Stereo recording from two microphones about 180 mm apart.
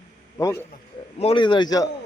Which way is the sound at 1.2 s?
30° left (ahead or behind).